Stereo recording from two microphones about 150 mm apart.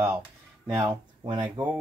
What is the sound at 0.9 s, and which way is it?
Speech, 30° right (ahead or behind).